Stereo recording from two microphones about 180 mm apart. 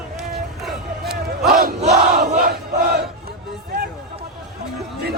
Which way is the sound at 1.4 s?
60° right (ahead or behind).